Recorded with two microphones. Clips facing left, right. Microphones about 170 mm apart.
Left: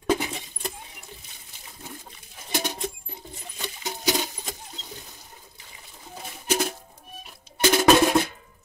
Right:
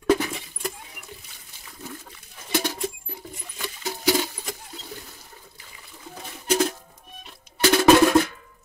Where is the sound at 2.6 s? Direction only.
20° left (ahead or behind).